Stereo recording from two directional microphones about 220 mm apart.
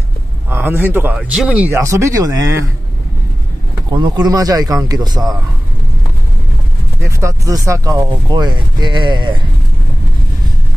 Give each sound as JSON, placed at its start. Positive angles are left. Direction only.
{"t": 0.5, "sound": "speech", "side_deg": -10}
{"t": 3.9, "sound": "speech", "side_deg": -20}
{"t": 7.0, "sound": "speech", "side_deg": -15}